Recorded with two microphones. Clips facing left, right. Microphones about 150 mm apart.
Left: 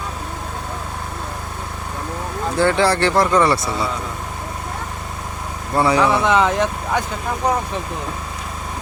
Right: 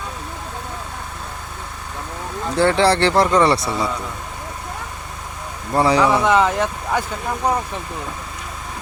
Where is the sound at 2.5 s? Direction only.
30° right (ahead or behind).